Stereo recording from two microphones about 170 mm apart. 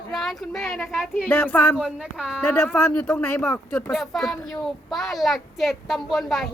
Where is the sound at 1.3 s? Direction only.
10° left (ahead or behind).